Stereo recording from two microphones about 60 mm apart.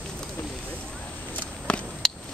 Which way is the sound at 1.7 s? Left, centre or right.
Centre.